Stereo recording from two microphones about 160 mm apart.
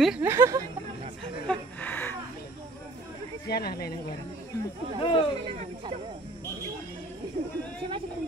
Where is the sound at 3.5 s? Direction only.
75° left (ahead or behind).